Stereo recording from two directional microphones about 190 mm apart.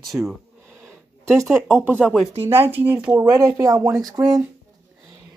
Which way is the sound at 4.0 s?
Centre (ahead or behind).